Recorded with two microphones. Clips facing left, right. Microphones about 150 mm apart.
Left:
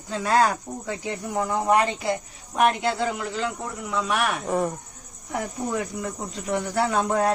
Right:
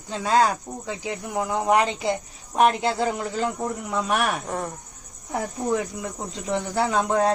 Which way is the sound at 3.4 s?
45° right (ahead or behind).